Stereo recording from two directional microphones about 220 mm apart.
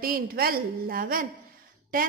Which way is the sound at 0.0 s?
40° right (ahead or behind).